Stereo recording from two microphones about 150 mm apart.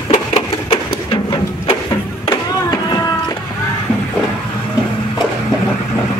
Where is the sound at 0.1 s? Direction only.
45° left (ahead or behind).